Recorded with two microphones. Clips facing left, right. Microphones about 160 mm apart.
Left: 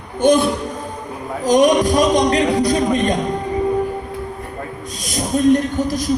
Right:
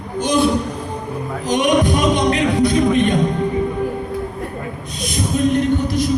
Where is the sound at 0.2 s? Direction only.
55° left (ahead or behind).